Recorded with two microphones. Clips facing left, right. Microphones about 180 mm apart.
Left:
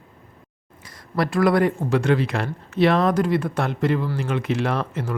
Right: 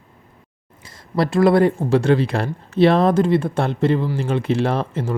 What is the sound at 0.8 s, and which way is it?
Speech, 25° right (ahead or behind).